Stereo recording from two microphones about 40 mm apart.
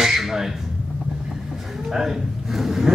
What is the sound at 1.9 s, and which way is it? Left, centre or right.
A man's voice, centre.